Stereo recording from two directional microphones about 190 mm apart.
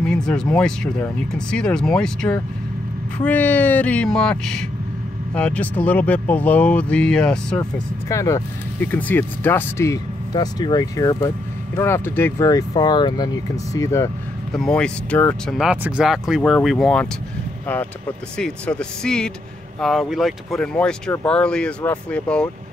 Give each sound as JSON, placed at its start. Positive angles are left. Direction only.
{"t": 0.0, "sound": "speech", "side_deg": 5}
{"t": 8.1, "sound": "speech", "side_deg": 15}
{"t": 14.5, "sound": "speech", "side_deg": 5}
{"t": 15.5, "sound": "speech", "side_deg": -5}